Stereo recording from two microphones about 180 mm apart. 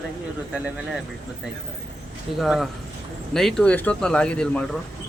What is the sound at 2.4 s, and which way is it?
Speech, centre (ahead or behind).